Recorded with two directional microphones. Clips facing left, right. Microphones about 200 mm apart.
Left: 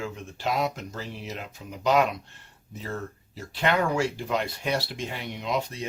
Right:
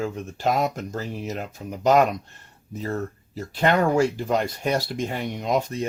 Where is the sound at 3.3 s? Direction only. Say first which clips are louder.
Right 4 dB; 45° right (ahead or behind).